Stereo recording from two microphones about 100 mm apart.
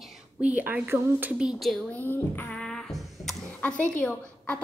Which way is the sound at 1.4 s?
5° right (ahead or behind).